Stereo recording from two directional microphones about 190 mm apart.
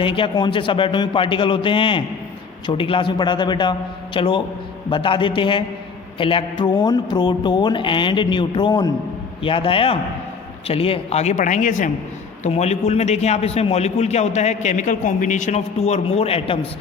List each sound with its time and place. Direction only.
0.0 s a man's voice: 25° left (ahead or behind)